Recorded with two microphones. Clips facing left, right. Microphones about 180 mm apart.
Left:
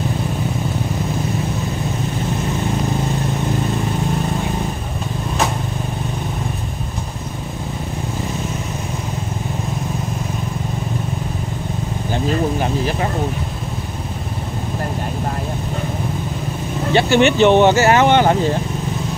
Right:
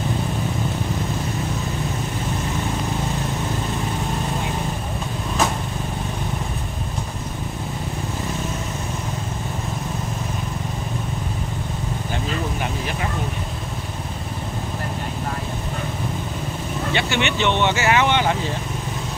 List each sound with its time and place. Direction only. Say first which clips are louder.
16.9 s speech: left 10 dB; 40° left (ahead or behind)